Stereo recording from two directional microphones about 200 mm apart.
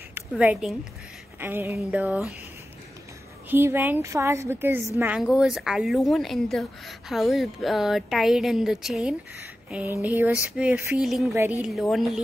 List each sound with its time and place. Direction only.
0.3 s a woman's voice: 5° right (ahead or behind)
3.4 s a woman's voice: 10° right (ahead or behind)